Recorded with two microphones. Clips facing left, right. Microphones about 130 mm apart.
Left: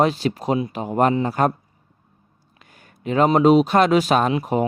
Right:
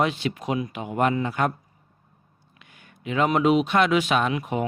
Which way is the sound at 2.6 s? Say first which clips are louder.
Left 5 dB; 40° left (ahead or behind).